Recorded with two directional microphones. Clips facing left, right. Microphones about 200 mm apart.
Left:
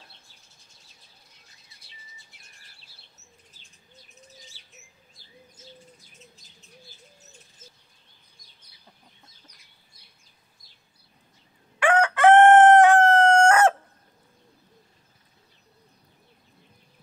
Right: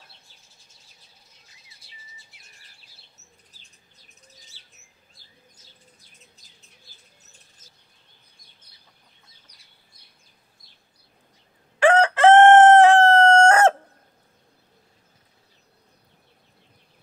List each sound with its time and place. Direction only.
4.5 s bird: 10° left (ahead or behind)
11.8 s chicken: 30° right (ahead or behind)